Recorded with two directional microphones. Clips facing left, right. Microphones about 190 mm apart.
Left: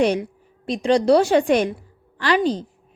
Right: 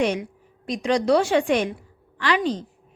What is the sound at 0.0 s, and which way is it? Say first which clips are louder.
A woman's voice: left 4 dB; 35° left (ahead or behind).